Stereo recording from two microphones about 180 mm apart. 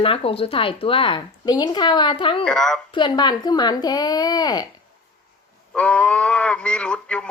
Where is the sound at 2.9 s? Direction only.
25° left (ahead or behind).